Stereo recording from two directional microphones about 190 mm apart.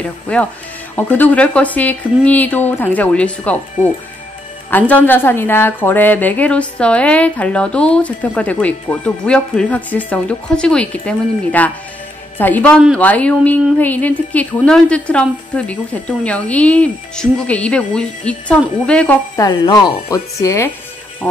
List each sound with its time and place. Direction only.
0.3 s a woman's voice: 5° left (ahead or behind)
19.3 s a woman's voice: 20° left (ahead or behind)